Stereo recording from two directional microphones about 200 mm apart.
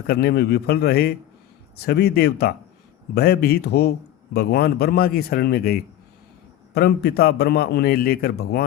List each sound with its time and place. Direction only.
0.1 s a man's voice: 55° left (ahead or behind)